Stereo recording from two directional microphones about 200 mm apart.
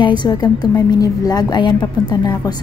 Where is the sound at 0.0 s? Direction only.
25° left (ahead or behind).